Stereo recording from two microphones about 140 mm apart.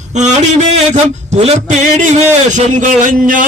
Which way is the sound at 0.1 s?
55° right (ahead or behind).